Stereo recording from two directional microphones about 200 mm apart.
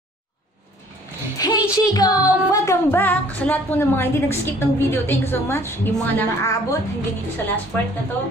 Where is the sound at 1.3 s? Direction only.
20° left (ahead or behind).